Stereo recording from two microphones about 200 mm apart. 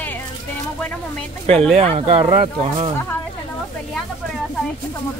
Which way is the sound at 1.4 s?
30° right (ahead or behind).